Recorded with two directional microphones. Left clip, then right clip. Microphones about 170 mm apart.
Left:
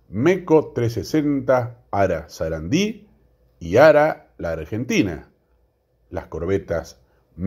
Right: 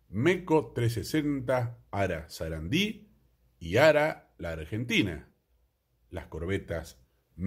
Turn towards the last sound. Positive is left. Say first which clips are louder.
# left 11 dB
turn(degrees=0)  # may be behind; listen again after turning